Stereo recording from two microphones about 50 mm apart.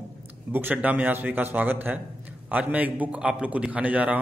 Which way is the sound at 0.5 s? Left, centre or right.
Right.